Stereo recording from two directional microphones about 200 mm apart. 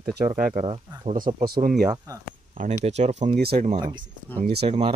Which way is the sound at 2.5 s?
40° right (ahead or behind).